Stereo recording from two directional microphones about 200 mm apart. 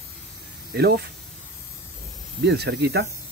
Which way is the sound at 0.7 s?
55° right (ahead or behind).